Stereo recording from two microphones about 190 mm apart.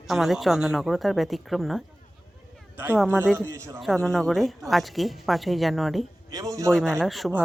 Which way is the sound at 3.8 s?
Centre (ahead or behind).